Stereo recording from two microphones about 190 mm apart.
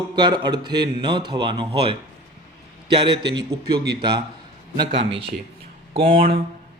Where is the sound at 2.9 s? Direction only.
25° right (ahead or behind).